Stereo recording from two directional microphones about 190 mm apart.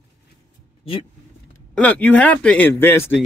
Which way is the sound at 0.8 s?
30° left (ahead or behind).